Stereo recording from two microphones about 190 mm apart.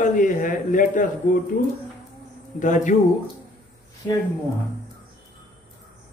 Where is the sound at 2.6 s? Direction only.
40° left (ahead or behind).